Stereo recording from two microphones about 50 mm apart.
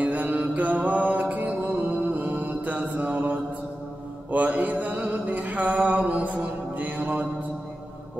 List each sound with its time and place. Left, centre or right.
0.0 s mantra: right
4.3 s music: right